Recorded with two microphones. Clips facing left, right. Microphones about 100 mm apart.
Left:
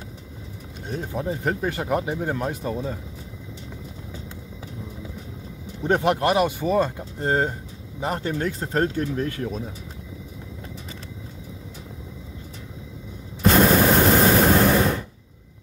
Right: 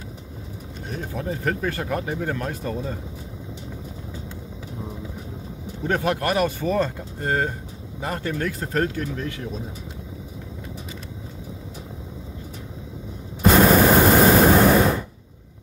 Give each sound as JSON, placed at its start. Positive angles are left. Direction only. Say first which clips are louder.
{"t": 0.8, "sound": "speech", "louder": "left 2 dB", "side_deg": 20}
{"t": 5.9, "sound": "speech", "louder": "left 3 dB", "side_deg": 20}
{"t": 13.4, "sound": "a sound", "louder": "right 2 dB", "side_deg": -5}
{"t": 13.9, "sound": "waves", "louder": "right 2 dB", "side_deg": -15}